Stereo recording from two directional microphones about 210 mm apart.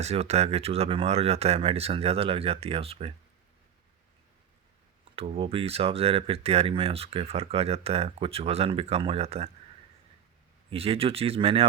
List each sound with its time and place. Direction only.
0.0 s speech: 30° right (ahead or behind)
5.1 s speech: 25° right (ahead or behind)
10.7 s speech: 25° right (ahead or behind)